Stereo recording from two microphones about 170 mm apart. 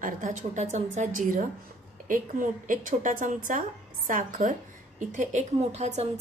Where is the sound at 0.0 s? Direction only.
50° right (ahead or behind).